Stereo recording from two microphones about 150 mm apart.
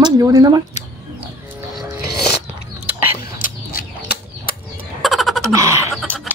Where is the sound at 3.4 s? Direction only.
80° left.